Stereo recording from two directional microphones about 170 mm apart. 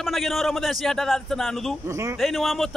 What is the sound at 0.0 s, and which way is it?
Speech, centre (ahead or behind).